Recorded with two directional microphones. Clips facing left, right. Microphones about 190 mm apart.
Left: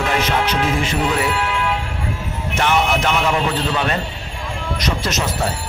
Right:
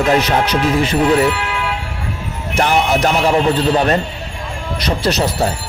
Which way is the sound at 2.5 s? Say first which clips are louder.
Right 3 dB; 35° right (ahead or behind).